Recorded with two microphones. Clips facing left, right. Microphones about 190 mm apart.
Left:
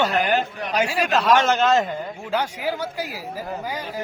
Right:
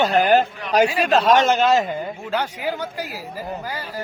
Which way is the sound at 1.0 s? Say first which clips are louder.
Left 1 dB; 25° right (ahead or behind).